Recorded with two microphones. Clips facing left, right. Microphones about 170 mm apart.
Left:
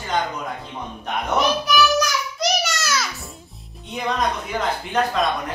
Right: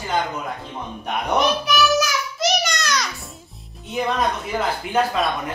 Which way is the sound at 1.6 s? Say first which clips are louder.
Even; centre (ahead or behind).